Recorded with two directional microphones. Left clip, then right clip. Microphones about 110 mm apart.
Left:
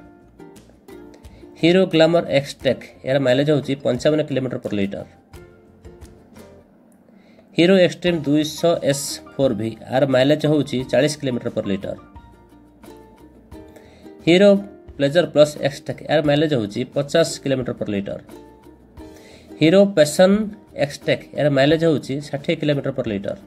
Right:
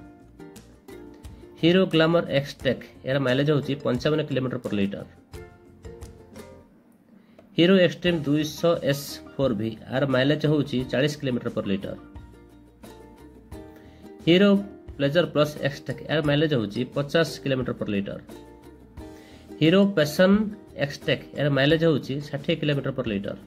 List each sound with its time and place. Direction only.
0.4 s music: centre (ahead or behind)
1.6 s speech: 35° left (ahead or behind)
7.5 s speech: 35° left (ahead or behind)
13.5 s music: centre (ahead or behind)
14.2 s speech: 35° left (ahead or behind)
19.6 s speech: 35° left (ahead or behind)